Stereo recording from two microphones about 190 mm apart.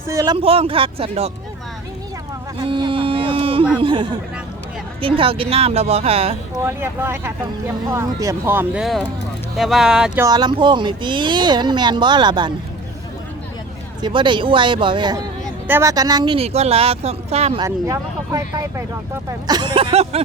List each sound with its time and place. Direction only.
0.1 s speech: 15° right (ahead or behind)
0.3 s speech: 30° right (ahead or behind)
2.6 s a sound: 25° right (ahead or behind)
3.8 s speech: 25° right (ahead or behind)
6.6 s speech: 15° right (ahead or behind)
10.2 s speech: 20° right (ahead or behind)
14.0 s speech: 25° right (ahead or behind)
17.6 s speech: 15° right (ahead or behind); by 20.2 s 30° right (ahead or behind)